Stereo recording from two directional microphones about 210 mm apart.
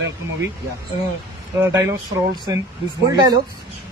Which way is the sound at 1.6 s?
15° right (ahead or behind).